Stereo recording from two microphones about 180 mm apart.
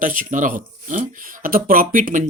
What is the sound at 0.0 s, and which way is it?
Speech, 50° right (ahead or behind).